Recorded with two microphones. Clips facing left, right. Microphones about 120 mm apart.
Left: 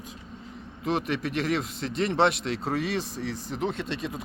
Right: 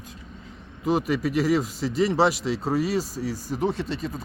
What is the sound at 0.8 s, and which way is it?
Speech, centre (ahead or behind).